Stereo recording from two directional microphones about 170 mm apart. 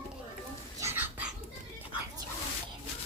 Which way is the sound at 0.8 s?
15° right (ahead or behind).